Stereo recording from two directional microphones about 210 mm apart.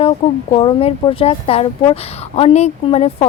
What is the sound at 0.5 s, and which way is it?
Speech, 25° left (ahead or behind).